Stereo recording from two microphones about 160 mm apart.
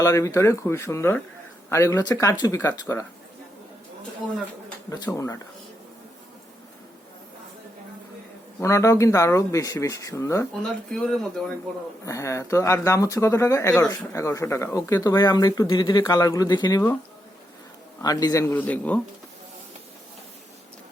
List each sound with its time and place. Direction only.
0.0 s speech: 20° left (ahead or behind)
5.0 s speech: 20° left (ahead or behind)
8.6 s speech: 20° left (ahead or behind)
10.6 s speech: 5° left (ahead or behind)
12.0 s speech: 20° left (ahead or behind)
18.0 s speech: 25° left (ahead or behind)